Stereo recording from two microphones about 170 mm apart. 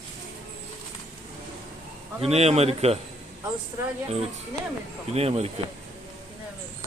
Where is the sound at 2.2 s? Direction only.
40° right (ahead or behind).